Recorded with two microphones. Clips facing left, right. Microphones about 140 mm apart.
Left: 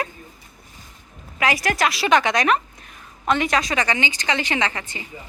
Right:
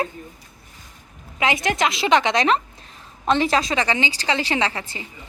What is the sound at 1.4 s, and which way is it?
A woman's voice, 25° right (ahead or behind).